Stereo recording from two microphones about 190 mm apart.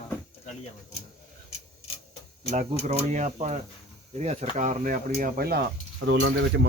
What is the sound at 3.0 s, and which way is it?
Speech, 40° right (ahead or behind).